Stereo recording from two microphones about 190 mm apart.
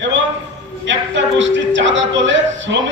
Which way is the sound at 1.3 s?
75° right (ahead or behind).